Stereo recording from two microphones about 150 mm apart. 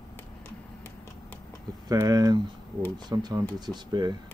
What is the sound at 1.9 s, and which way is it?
Speech, 25° right (ahead or behind).